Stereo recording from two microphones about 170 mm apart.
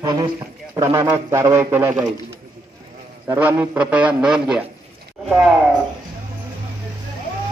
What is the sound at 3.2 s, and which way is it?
A man's voice, 10° right (ahead or behind).